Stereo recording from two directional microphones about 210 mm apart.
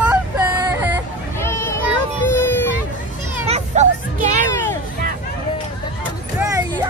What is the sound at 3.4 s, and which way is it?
Hubbub, 30° right (ahead or behind).